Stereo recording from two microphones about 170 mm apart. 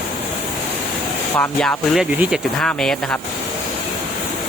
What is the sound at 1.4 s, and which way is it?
Speech, 5° left (ahead or behind).